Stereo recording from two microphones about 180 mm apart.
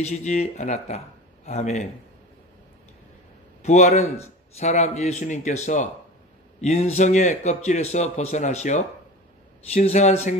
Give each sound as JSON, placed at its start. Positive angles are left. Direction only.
{"t": 0.0, "sound": "speech", "side_deg": 40}
{"t": 3.6, "sound": "speech", "side_deg": 40}